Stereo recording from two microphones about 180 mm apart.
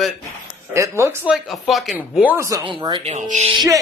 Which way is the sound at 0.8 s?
15° right (ahead or behind).